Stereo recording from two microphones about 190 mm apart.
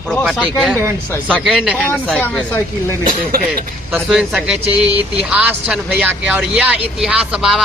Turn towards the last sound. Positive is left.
turn(degrees=-5)  # may be behind; listen again after turning